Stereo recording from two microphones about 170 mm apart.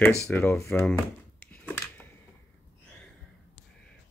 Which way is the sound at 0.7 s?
10° left (ahead or behind).